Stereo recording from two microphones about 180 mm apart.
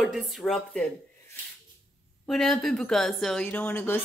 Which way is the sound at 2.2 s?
Centre (ahead or behind).